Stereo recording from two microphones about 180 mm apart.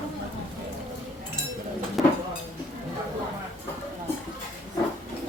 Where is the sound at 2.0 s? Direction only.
Centre (ahead or behind).